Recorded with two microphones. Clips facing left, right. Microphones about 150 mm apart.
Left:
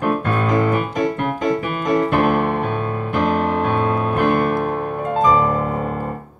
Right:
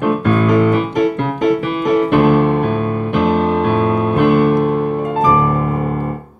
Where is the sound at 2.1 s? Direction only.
15° right (ahead or behind).